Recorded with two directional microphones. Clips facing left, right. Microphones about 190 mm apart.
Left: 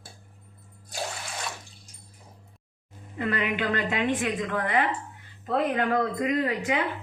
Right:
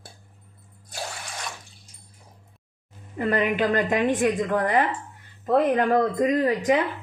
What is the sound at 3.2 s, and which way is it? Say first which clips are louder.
Speech: right 5 dB; 40° right (ahead or behind).